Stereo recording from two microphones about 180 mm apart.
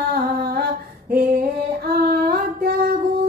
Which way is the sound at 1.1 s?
60° right (ahead or behind).